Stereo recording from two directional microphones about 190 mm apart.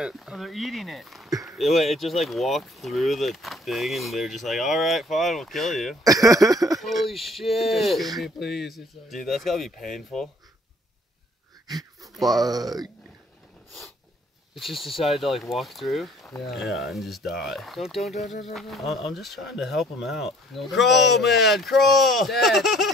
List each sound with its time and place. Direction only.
0.0 s speech: centre (ahead or behind)
6.0 s speech: 20° right (ahead or behind)
6.8 s speech: centre (ahead or behind)
11.6 s wheeze: 20° right (ahead or behind)
12.3 s speech: 20° right (ahead or behind)
14.5 s speech: centre (ahead or behind)